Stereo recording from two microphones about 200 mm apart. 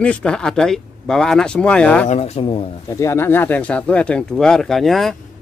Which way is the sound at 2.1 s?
30° left (ahead or behind).